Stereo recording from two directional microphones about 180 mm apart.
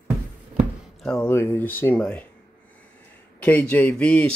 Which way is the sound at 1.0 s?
5° left (ahead or behind).